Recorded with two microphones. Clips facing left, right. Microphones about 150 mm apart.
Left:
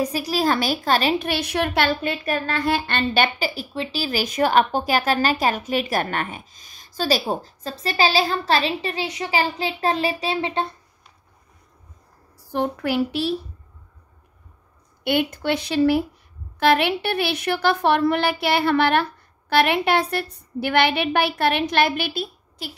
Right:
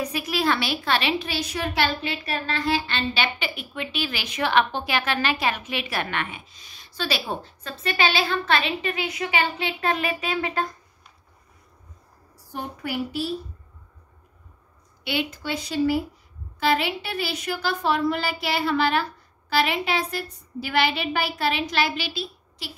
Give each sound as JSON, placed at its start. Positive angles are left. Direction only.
{"t": 0.0, "sound": "a woman's voice", "side_deg": 40}
{"t": 1.2, "sound": "speech", "side_deg": 60}
{"t": 3.3, "sound": "a woman's voice", "side_deg": 35}
{"t": 12.5, "sound": "a woman's voice", "side_deg": 75}
{"t": 15.0, "sound": "speech", "side_deg": 50}
{"t": 15.5, "sound": "a woman's voice", "side_deg": 70}